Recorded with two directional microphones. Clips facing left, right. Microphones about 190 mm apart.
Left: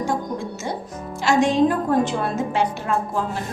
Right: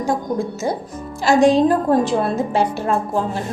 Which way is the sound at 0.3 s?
35° right (ahead or behind).